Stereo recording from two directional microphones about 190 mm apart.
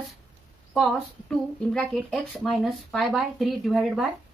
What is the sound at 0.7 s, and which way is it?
Speech, 5° left (ahead or behind).